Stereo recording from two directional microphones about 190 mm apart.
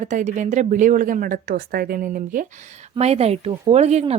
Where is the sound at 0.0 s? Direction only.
40° right (ahead or behind).